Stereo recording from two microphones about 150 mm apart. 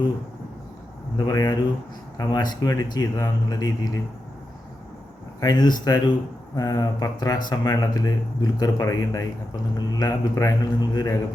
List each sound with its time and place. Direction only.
1.1 s speech: 25° left (ahead or behind)
5.4 s speech: 25° left (ahead or behind)